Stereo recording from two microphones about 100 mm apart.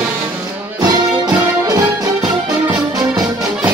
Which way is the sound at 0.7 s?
45° right (ahead or behind).